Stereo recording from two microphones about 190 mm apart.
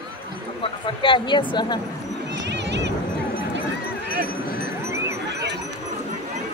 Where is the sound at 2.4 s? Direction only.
65° right (ahead or behind).